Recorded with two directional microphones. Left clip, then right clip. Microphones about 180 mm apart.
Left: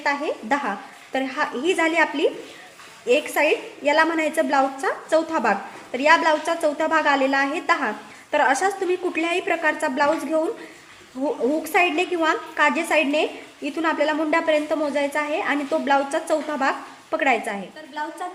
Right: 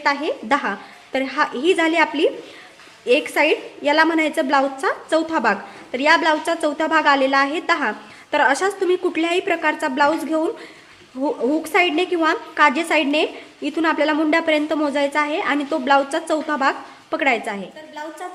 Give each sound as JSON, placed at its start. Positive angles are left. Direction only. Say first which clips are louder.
{"t": 0.0, "sound": "a woman's voice", "louder": "right 3 dB", "side_deg": -20}
{"t": 18.0, "sound": "a woman's voice", "louder": "left 3 dB", "side_deg": 0}